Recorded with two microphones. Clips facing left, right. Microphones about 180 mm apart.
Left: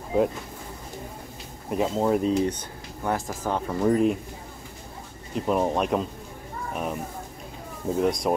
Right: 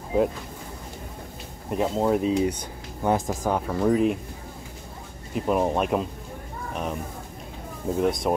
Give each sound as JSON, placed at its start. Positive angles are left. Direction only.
{"t": 1.7, "sound": "speech", "side_deg": 0}
{"t": 3.0, "sound": "speech", "side_deg": -20}
{"t": 3.6, "sound": "speech", "side_deg": 0}
{"t": 5.3, "sound": "speech", "side_deg": -5}